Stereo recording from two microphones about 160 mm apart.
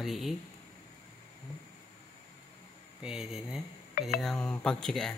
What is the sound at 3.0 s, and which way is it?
Speech, 5° right (ahead or behind).